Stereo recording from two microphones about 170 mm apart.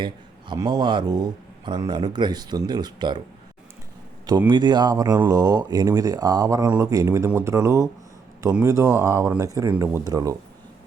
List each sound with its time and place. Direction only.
0.0 s speech: 25° right (ahead or behind)
4.4 s speech: 25° right (ahead or behind)